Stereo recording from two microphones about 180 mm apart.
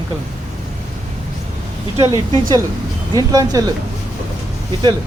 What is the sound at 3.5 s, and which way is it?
Speech, 20° right (ahead or behind).